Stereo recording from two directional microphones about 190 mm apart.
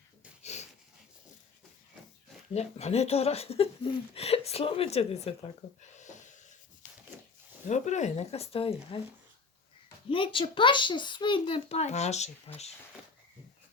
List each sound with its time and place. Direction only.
0.4 s wheeze: 35° left (ahead or behind)
2.5 s speech: 35° left (ahead or behind)
7.7 s speech: 40° left (ahead or behind)
10.1 s speech: 25° left (ahead or behind)